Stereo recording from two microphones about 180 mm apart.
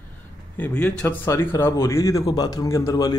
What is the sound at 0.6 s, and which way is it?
A man's voice, 5° left (ahead or behind).